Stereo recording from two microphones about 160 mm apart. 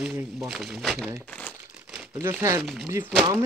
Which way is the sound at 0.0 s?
10° right (ahead or behind).